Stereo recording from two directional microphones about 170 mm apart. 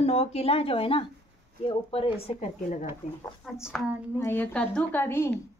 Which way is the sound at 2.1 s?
40° left (ahead or behind).